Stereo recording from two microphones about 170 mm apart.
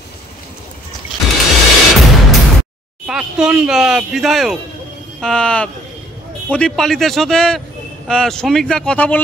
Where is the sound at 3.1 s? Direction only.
5° right (ahead or behind).